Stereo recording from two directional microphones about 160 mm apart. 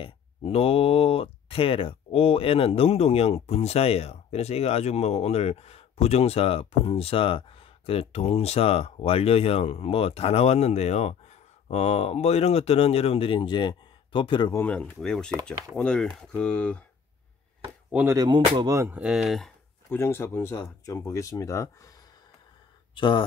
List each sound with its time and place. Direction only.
0.0 s speech: 35° left (ahead or behind)
14.5 s speech: 10° left (ahead or behind)
17.9 s speech: 20° right (ahead or behind); by 19.5 s centre (ahead or behind)
19.9 s speech: 15° left (ahead or behind)
22.9 s speech: 30° left (ahead or behind)